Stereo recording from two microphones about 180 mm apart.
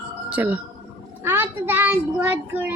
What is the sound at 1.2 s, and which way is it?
Child singing, 10° right (ahead or behind).